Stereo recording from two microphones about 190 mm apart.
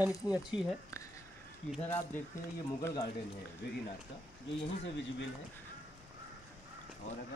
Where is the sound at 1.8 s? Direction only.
10° left (ahead or behind).